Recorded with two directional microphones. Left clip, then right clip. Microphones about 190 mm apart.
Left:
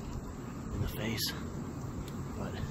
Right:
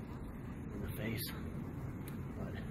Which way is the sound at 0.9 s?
5° left (ahead or behind).